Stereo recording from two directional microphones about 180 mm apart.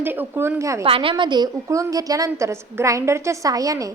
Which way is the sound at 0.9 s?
30° right (ahead or behind).